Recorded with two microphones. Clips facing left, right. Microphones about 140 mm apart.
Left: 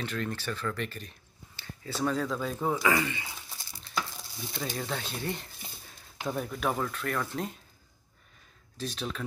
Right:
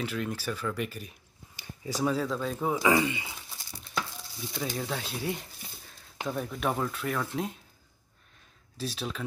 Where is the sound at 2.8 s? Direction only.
20° right (ahead or behind).